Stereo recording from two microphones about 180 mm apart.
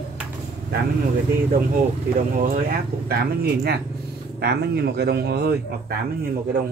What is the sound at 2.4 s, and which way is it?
Speech, 50° right (ahead or behind).